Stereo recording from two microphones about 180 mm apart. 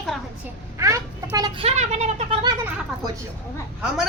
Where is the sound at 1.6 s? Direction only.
35° right (ahead or behind).